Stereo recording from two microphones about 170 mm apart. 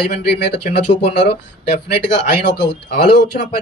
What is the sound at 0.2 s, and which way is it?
Speech, 75° left (ahead or behind).